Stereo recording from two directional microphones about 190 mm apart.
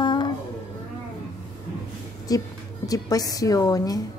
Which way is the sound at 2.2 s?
20° left (ahead or behind).